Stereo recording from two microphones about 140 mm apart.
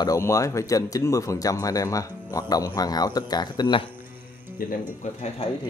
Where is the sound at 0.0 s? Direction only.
20° left (ahead or behind).